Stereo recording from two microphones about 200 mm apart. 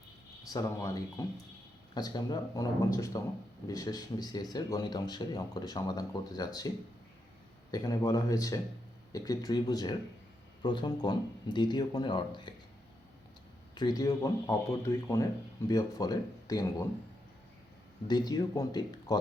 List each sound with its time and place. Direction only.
0.5 s speech: 15° left (ahead or behind)
7.7 s speech: 15° left (ahead or behind)
13.7 s speech: 20° left (ahead or behind)
18.1 s speech: 20° left (ahead or behind)